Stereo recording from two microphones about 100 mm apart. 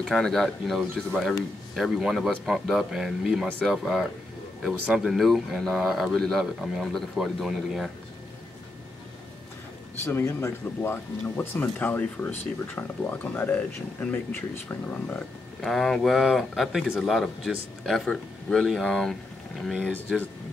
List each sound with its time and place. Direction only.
0.0 s speech: 5° left (ahead or behind)
10.0 s speech: 25° left (ahead or behind)
15.6 s speech: centre (ahead or behind)
19.9 s speech: 15° left (ahead or behind)